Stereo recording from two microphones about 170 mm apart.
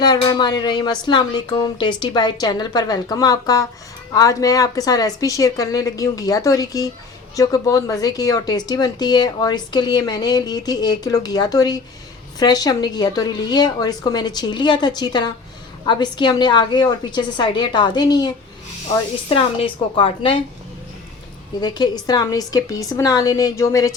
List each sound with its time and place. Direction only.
0.0 s a woman's voice: 25° left (ahead or behind)
21.6 s speech: 25° left (ahead or behind)